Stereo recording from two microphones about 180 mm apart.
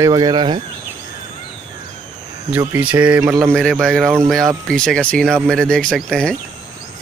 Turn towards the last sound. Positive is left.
turn(degrees=5)  # may be behind; listen again after turning